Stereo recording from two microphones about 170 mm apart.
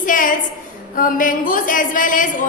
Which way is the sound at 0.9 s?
55° left (ahead or behind).